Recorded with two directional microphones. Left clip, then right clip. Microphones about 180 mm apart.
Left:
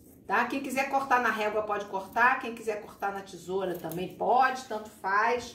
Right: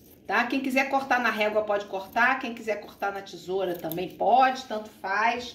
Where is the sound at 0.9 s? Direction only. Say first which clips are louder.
Right 1 dB; 20° right (ahead or behind).